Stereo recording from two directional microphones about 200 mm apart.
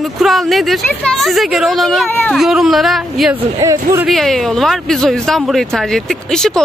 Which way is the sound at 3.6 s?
15° right (ahead or behind).